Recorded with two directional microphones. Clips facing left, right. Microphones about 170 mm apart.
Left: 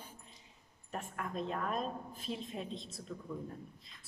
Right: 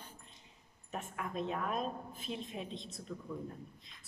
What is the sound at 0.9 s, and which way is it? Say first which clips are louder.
A woman's voice: even; centre (ahead or behind).